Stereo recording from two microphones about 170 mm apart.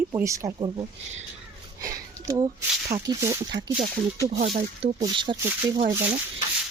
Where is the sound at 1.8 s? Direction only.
20° right (ahead or behind).